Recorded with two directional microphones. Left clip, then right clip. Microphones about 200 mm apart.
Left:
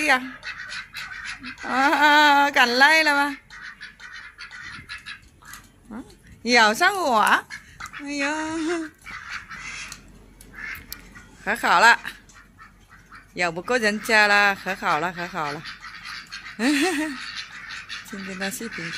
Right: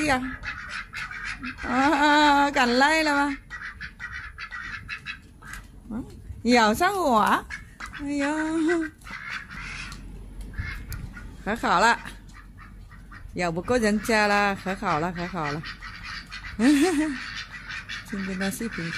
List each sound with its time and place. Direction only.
0.0 s speech: centre (ahead or behind)
6.4 s speech: 5° right (ahead or behind)
11.4 s speech: centre (ahead or behind)
13.3 s speech: 5° right (ahead or behind)
16.3 s fowl: 5° right (ahead or behind)